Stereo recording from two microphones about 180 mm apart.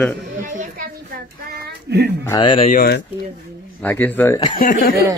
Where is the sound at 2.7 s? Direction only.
50° left (ahead or behind).